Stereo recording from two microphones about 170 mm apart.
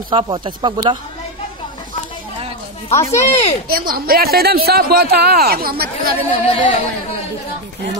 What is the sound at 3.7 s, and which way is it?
A man's voice, 60° right (ahead or behind).